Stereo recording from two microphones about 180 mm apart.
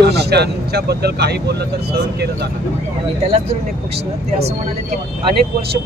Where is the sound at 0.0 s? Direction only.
65° right (ahead or behind).